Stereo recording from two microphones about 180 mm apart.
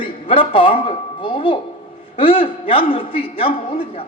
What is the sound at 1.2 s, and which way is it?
A man's voice, 30° left (ahead or behind).